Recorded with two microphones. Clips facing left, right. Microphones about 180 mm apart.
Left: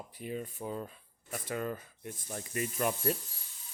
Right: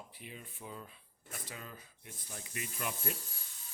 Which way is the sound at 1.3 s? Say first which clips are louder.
Left 12 dB; 55° left (ahead or behind).